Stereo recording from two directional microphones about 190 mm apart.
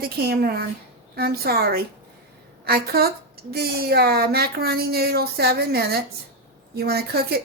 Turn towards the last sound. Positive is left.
turn(degrees=-55)  # may be behind; listen again after turning